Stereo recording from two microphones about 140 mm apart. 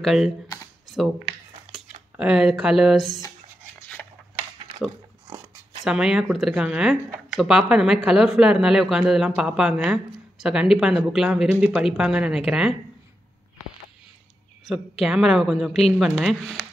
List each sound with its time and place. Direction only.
0.0 s speech: centre (ahead or behind)
0.8 s a sound: centre (ahead or behind)
2.1 s speech: 5° right (ahead or behind)
5.9 s speech: 5° right (ahead or behind)
14.7 s speech: 5° right (ahead or behind)